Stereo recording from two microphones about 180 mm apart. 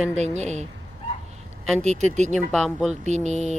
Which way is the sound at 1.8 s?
40° right (ahead or behind).